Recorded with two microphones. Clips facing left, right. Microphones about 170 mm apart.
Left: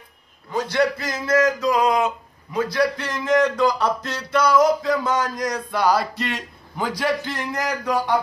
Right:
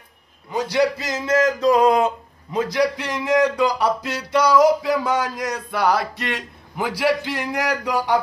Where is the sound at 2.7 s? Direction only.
15° right (ahead or behind).